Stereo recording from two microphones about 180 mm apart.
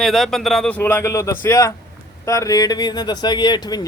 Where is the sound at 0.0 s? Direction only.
Centre (ahead or behind).